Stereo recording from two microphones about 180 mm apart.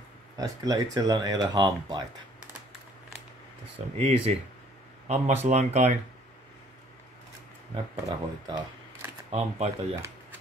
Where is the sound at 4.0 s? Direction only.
35° right (ahead or behind).